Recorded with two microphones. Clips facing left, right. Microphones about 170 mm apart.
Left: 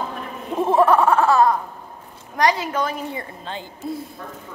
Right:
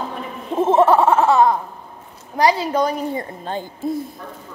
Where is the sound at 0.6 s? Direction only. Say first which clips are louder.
Right 2 dB; 25° right (ahead or behind); by 3.6 s 45° right (ahead or behind).